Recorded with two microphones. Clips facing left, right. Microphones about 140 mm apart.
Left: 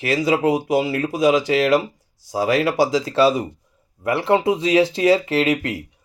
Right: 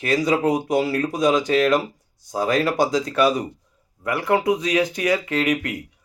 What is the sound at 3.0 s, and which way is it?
Speech, 30° left (ahead or behind).